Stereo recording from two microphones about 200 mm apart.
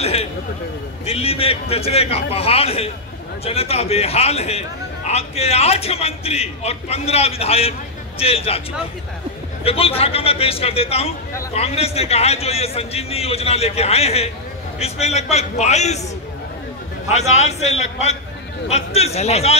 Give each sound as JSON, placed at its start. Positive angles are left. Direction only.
{"t": 0.0, "sound": "a sound", "side_deg": 30}
{"t": 1.0, "sound": "a man's voice", "side_deg": 30}
{"t": 9.7, "sound": "a man's voice", "side_deg": 30}
{"t": 17.4, "sound": "a man's voice", "side_deg": 35}